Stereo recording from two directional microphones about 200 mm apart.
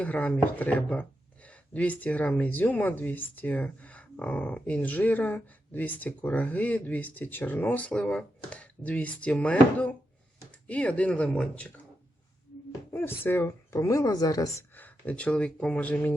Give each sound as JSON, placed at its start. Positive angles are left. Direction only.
{"t": 0.0, "sound": "speech", "side_deg": 5}
{"t": 12.9, "sound": "speech", "side_deg": 10}